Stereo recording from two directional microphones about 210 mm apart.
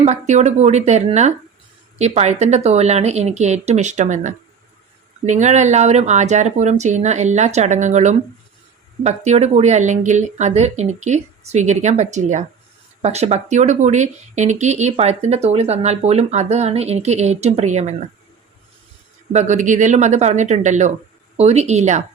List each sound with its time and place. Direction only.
0.0 s speech: 35° right (ahead or behind)
19.3 s speech: 35° right (ahead or behind)